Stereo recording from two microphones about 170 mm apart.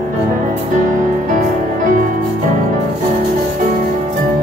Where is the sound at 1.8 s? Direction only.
50° right (ahead or behind).